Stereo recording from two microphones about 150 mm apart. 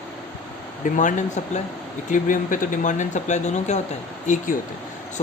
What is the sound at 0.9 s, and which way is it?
Speech, 55° left (ahead or behind).